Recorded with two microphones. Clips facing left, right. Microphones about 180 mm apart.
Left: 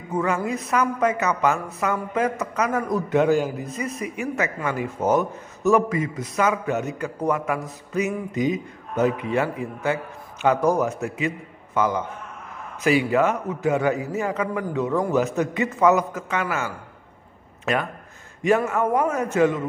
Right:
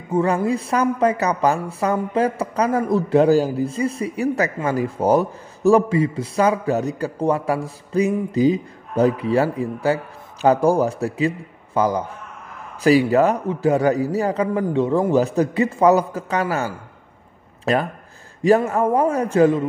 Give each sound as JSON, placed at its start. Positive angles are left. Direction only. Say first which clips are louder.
{"t": 0.1, "sound": "speech", "louder": "right 5 dB", "side_deg": -30}